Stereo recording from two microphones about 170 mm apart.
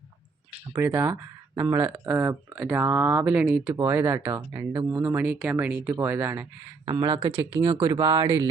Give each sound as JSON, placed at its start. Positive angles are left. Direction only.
{"t": 0.5, "sound": "a sound", "side_deg": -35}
{"t": 0.8, "sound": "speech", "side_deg": -15}
{"t": 6.8, "sound": "speech", "side_deg": -30}